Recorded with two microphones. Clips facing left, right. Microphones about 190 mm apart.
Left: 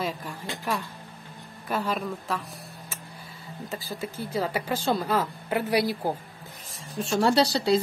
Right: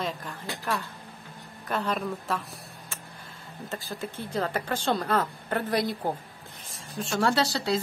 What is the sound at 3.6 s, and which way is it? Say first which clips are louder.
Speech: left 1 dB; 5° left (ahead or behind).